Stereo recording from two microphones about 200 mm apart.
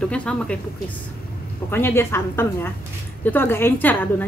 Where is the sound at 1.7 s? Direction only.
10° left (ahead or behind).